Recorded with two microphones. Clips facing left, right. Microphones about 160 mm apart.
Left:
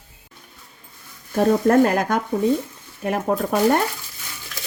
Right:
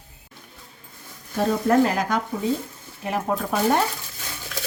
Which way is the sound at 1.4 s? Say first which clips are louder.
Left 4 dB; 50° left (ahead or behind).